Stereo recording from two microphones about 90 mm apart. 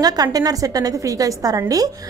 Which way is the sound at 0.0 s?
45° right (ahead or behind).